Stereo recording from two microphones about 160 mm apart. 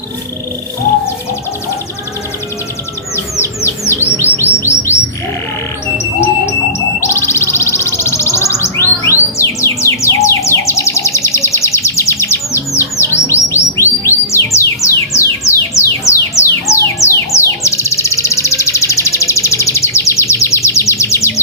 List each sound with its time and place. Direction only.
3.4 s bird: 15° left (ahead or behind)
6.1 s music: 15° left (ahead or behind)